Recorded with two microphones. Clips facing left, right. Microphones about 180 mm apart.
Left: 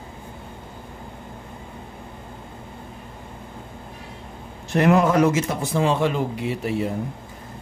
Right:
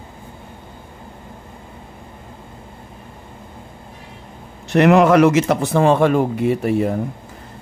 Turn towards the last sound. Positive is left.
turn(degrees=-50)  # may be behind; listen again after turning